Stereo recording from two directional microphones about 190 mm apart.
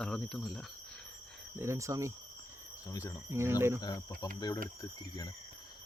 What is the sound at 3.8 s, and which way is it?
Speech, 20° left (ahead or behind).